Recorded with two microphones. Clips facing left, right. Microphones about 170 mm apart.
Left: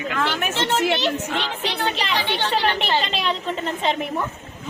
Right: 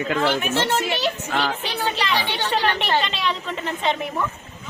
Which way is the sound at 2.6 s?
35° left (ahead or behind).